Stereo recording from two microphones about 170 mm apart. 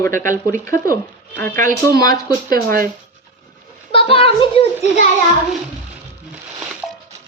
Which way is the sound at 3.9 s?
30° left (ahead or behind).